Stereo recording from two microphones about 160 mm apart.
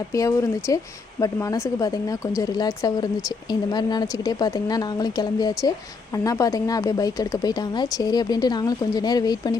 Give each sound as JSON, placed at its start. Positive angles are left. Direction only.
{"t": 0.1, "sound": "speech", "side_deg": 20}